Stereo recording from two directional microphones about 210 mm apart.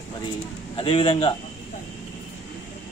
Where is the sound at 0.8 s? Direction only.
25° left (ahead or behind).